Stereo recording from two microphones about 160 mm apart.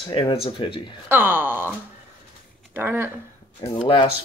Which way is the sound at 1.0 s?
10° right (ahead or behind).